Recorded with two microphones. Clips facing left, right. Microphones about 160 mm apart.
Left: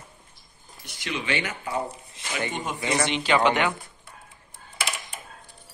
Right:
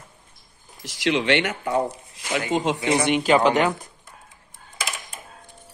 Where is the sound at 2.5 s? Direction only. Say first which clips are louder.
Right 9 dB; 90° right.